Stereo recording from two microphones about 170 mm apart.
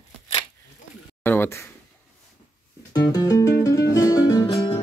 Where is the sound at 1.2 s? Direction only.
10° left (ahead or behind).